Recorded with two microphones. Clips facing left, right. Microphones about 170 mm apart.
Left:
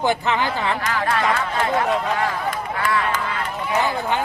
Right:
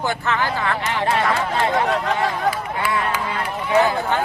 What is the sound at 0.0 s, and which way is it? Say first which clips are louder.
Speech: left 2 dB; 15° left (ahead or behind).